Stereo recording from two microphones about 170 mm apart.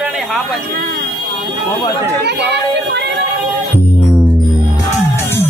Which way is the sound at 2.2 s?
80° right.